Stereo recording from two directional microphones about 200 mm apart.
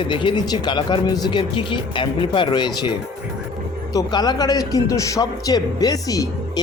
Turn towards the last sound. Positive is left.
turn(degrees=20)  # may be behind; listen again after turning